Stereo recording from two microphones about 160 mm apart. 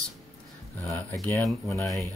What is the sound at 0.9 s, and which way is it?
Speech, 10° left (ahead or behind).